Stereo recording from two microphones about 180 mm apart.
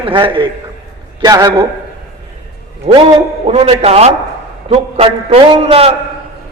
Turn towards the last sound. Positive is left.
turn(degrees=-35)  # may be behind; listen again after turning